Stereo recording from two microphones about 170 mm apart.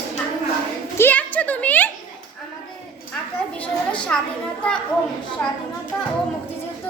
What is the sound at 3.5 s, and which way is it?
Speech, 5° left (ahead or behind).